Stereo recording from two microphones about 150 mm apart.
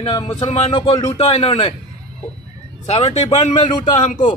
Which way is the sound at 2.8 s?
45° left (ahead or behind).